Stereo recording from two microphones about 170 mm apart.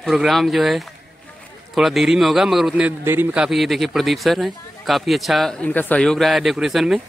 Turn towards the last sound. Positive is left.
turn(degrees=0)  # may be behind; listen again after turning